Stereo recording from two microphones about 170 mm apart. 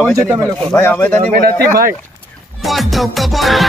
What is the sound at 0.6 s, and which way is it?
Speech, 10° left (ahead or behind).